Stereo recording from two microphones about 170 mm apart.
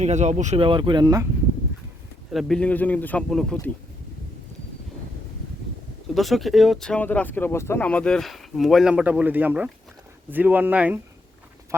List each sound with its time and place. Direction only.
0.0 s speech: 40° right (ahead or behind)
0.6 s speech: 30° right (ahead or behind)
2.3 s a man's voice: centre (ahead or behind)
6.1 s speech: centre (ahead or behind)